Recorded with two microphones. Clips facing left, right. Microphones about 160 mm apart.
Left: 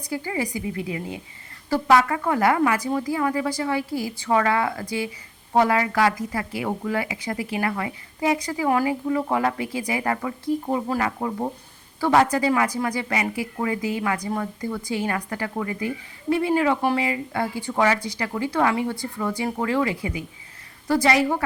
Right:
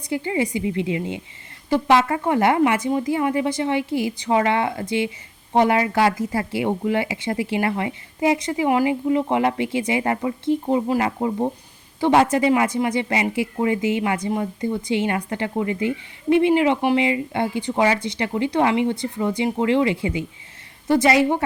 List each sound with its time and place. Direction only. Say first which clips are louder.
0.1 s speech: right 4 dB; 25° right (ahead or behind)